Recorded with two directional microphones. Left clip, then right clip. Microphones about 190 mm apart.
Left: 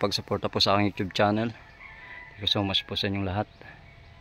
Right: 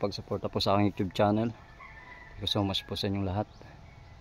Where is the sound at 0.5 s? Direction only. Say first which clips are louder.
Left 3 dB; 5° right (ahead or behind).